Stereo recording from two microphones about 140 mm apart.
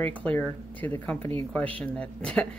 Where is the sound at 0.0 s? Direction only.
10° left (ahead or behind).